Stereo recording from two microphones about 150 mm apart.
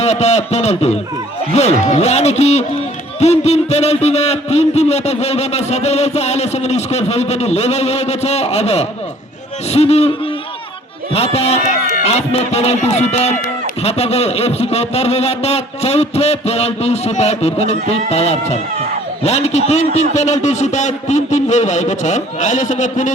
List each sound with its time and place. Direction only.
0.0 s a man's voice: 45° left (ahead or behind)